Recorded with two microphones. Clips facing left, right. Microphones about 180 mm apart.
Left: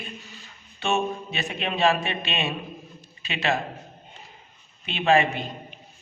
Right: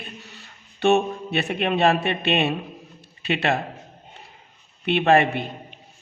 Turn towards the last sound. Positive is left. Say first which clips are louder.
# right 3 dB
turn(degrees=-60)  # may be behind; listen again after turning